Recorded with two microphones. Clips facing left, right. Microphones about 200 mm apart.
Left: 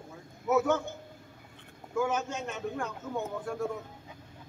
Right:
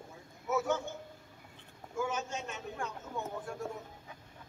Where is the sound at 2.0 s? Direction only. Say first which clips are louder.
Left 5 dB; 65° left (ahead or behind).